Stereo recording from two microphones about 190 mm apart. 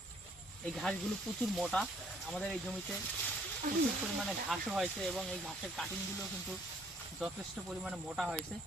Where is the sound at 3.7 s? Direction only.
45° right (ahead or behind).